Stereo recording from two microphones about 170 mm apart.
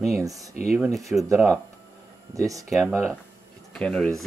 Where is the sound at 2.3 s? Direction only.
20° right (ahead or behind).